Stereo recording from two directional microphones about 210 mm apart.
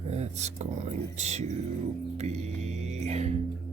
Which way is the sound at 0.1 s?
30° right (ahead or behind).